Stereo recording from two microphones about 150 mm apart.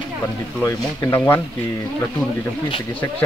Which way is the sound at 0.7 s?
20° left (ahead or behind).